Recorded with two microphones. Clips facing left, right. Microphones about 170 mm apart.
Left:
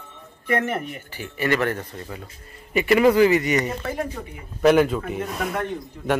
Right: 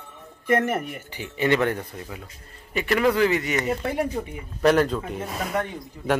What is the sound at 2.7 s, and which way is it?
Speech, 5° left (ahead or behind).